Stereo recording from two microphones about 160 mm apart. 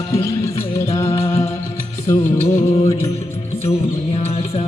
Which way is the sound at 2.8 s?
15° left (ahead or behind).